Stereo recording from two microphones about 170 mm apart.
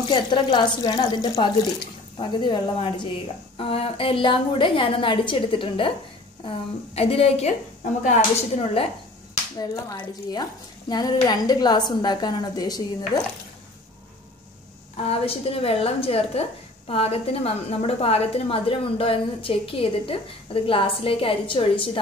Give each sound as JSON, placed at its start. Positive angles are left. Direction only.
{"t": 0.1, "sound": "a woman's voice", "side_deg": 30}
{"t": 7.0, "sound": "a woman's voice", "side_deg": 35}
{"t": 9.6, "sound": "a woman's voice", "side_deg": 25}
{"t": 15.0, "sound": "a woman's voice", "side_deg": 35}